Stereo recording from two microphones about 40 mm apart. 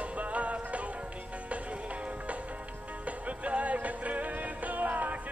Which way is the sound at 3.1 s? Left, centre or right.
Right.